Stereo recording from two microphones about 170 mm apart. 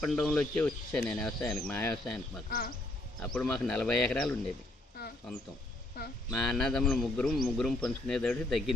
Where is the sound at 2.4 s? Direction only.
60° left (ahead or behind).